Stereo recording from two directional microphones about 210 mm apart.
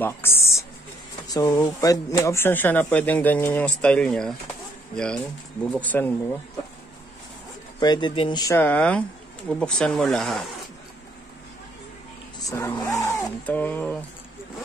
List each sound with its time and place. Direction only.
0.0 s a sound: 10° left (ahead or behind)
1.2 s speech: 15° left (ahead or behind)
7.8 s speech: 20° left (ahead or behind); by 10.4 s centre (ahead or behind)
12.4 s speech: 15° left (ahead or behind)